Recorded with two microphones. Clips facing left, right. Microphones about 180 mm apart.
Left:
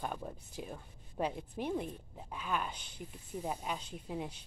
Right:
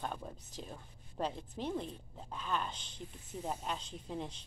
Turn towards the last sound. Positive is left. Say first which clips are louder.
# left 1 dB
turn(degrees=10)  # may be behind; listen again after turning